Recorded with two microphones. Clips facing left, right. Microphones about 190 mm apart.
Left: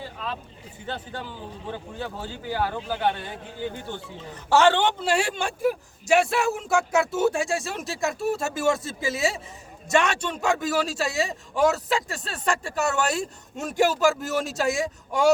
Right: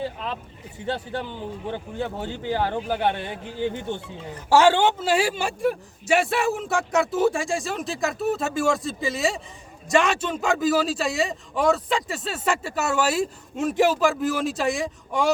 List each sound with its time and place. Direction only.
1.2 s speech: 20° right (ahead or behind)
4.4 s a man's voice: 10° right (ahead or behind)